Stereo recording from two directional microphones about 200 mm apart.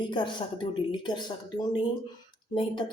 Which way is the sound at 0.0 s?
25° left (ahead or behind).